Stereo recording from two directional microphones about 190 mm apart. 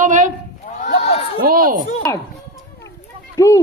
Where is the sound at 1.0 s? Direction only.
30° left (ahead or behind).